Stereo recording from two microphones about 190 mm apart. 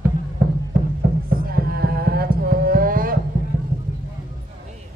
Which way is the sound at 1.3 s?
55° right (ahead or behind).